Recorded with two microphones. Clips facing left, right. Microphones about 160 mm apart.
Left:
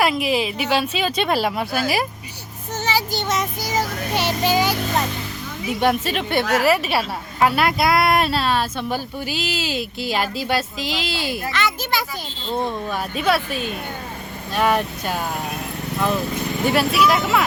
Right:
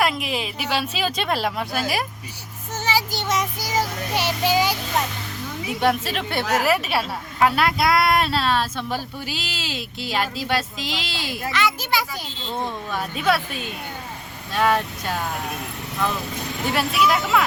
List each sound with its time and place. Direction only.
0.0 s a woman's voice: 5° left (ahead or behind)
2.7 s child singing: 10° right (ahead or behind)
5.8 s a woman's voice: centre (ahead or behind)
11.5 s a child's voice: 10° right (ahead or behind)
12.6 s a woman's voice: 5° left (ahead or behind)
13.5 s speech: 50° left (ahead or behind)
14.5 s a woman's voice: 5° left (ahead or behind)
16.6 s a woman's voice: centre (ahead or behind)